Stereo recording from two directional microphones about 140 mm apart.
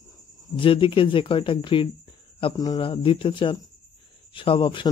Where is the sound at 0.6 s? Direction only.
40° left (ahead or behind).